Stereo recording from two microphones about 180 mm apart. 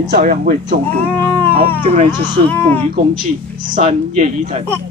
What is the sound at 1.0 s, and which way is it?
Baby cry, 10° left (ahead or behind).